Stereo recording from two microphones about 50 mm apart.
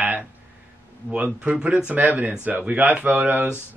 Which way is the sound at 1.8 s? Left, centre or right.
Right.